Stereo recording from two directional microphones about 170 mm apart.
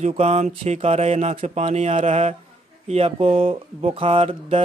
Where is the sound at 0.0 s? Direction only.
40° right (ahead or behind).